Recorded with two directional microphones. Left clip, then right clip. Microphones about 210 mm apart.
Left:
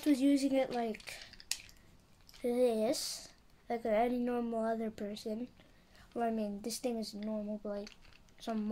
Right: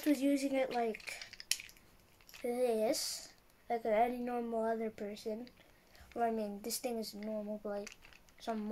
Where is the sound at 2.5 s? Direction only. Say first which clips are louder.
Left 2 dB; 15° left (ahead or behind).